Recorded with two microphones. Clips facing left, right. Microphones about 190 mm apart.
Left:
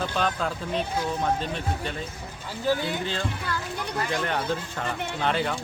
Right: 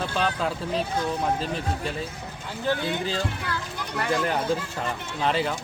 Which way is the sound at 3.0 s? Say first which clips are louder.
Right 2 dB; 5° right (ahead or behind).